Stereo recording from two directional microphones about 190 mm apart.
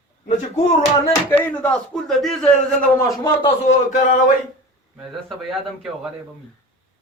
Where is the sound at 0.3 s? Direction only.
35° left (ahead or behind).